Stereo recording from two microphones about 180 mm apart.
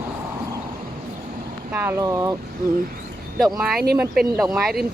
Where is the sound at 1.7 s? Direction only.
10° right (ahead or behind).